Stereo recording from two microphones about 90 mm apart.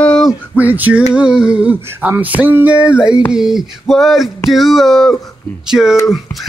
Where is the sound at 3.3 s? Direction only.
5° right (ahead or behind).